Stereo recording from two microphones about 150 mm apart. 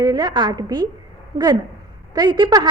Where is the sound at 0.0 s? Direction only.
25° right (ahead or behind).